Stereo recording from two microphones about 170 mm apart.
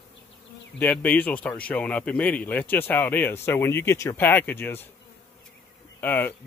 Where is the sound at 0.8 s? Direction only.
10° left (ahead or behind).